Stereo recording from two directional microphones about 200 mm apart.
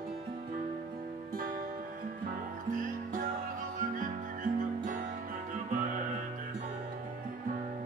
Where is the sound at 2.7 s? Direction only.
40° right (ahead or behind).